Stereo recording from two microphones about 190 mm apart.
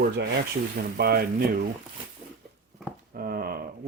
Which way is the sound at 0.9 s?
55° right (ahead or behind).